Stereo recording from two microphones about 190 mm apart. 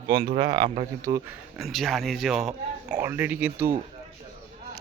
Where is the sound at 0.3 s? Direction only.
25° right (ahead or behind).